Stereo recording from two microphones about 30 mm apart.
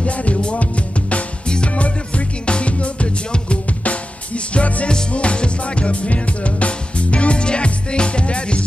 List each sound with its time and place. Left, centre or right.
0.0 s music: left
5.1 s drum kit: left